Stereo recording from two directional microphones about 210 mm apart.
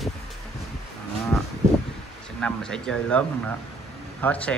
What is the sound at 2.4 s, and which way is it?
Speech, 5° left (ahead or behind).